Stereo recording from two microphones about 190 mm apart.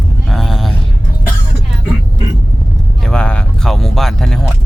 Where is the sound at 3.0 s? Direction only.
5° left (ahead or behind).